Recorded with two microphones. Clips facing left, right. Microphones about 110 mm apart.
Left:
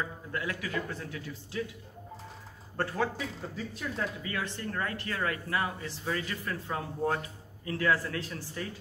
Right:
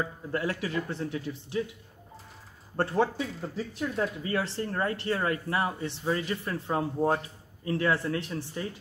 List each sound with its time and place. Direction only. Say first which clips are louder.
0.3 s speech: right 5 dB; 35° right (ahead or behind)
2.8 s speech: right 5 dB; 30° right (ahead or behind)